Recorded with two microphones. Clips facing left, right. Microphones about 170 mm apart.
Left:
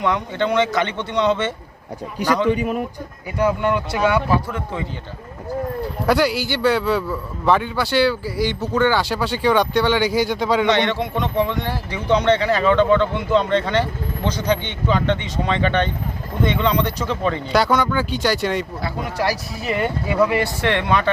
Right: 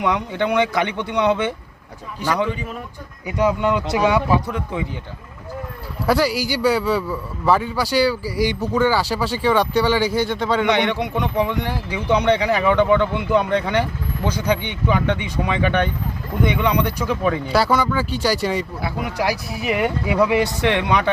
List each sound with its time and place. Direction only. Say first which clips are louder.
0.0 s speech: even; 15° right (ahead or behind)
3.2 s speech: even; 20° right (ahead or behind)
6.1 s a man's voice: even; 5° right (ahead or behind)
10.7 s speech: even; 15° right (ahead or behind)